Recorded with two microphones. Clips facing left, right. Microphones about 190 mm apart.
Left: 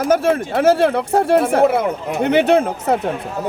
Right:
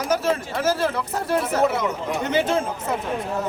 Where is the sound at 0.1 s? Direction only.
60° left (ahead or behind).